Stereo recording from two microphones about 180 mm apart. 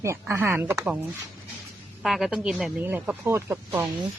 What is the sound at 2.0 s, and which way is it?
Speech, centre (ahead or behind).